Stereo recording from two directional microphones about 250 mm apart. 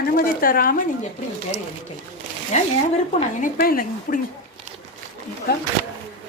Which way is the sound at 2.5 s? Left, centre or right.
Left.